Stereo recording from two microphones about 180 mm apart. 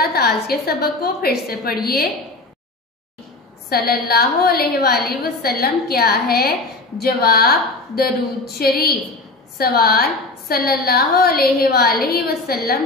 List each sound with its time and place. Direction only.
0.0 s a woman's voice: 60° left (ahead or behind)
3.8 s a woman's voice: 60° left (ahead or behind)